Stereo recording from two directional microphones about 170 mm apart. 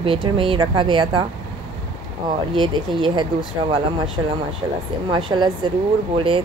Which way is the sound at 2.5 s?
30° right (ahead or behind).